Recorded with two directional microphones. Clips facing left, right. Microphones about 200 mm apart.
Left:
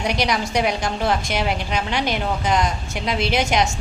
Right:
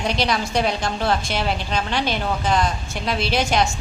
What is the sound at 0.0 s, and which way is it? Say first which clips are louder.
A woman's voice: even; 15° left (ahead or behind).